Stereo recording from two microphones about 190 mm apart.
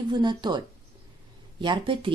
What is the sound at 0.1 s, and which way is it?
Speech, 25° right (ahead or behind).